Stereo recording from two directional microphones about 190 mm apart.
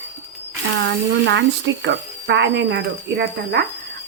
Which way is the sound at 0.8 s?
70° right (ahead or behind).